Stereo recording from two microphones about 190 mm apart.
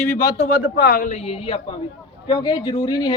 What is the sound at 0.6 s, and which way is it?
A man's voice, 55° left (ahead or behind).